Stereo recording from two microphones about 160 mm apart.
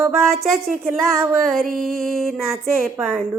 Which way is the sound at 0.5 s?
Centre (ahead or behind).